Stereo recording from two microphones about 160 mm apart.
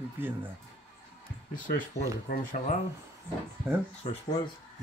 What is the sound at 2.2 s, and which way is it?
Speech, 55° left (ahead or behind).